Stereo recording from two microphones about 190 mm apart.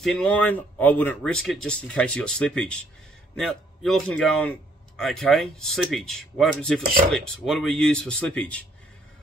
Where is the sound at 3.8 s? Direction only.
5° left (ahead or behind).